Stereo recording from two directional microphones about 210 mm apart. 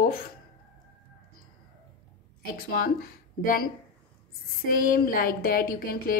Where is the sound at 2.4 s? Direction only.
45° left (ahead or behind).